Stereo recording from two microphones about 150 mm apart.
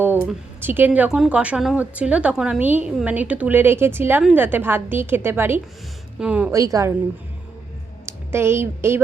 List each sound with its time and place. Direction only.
0.0 s a sound: 15° right (ahead or behind)
0.6 s a woman's voice: 15° right (ahead or behind)
6.5 s a woman's voice: 20° right (ahead or behind)
8.0 s speech: 15° right (ahead or behind)